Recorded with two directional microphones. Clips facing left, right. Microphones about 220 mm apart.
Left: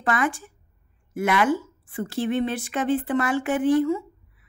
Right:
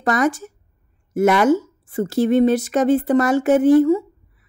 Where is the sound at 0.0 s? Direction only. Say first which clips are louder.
Right 6 dB; 40° right (ahead or behind).